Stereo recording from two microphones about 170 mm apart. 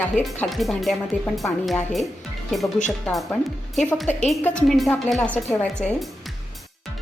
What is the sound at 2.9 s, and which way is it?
Speech, 5° left (ahead or behind).